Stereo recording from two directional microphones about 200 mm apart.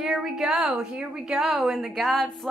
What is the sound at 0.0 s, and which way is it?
A woman's voice, centre (ahead or behind).